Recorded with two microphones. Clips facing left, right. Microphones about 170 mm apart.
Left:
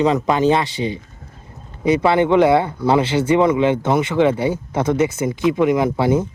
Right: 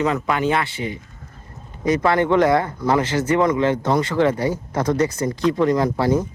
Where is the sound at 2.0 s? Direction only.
20° left (ahead or behind).